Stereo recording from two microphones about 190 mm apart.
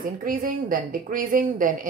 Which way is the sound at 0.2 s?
45° right (ahead or behind).